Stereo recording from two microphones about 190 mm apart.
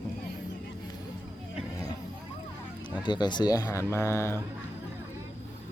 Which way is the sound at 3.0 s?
25° left (ahead or behind).